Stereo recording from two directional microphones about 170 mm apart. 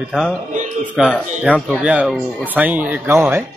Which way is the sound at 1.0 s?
5° right (ahead or behind).